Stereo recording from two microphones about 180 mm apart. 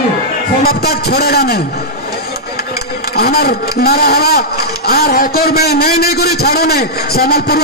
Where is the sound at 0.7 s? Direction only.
60° left (ahead or behind).